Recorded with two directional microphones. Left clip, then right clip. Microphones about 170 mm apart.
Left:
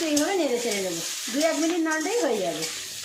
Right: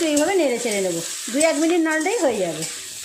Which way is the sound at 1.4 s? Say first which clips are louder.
Right 6 dB; 40° right (ahead or behind).